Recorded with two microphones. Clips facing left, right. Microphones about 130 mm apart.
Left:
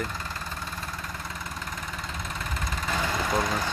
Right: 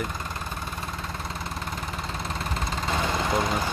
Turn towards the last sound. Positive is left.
turn(degrees=-25)  # may be behind; listen again after turning